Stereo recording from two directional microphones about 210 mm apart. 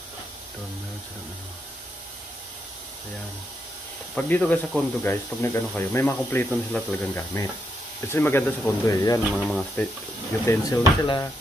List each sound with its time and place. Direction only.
4.1 s speech: 5° left (ahead or behind)
9.3 s speech: centre (ahead or behind)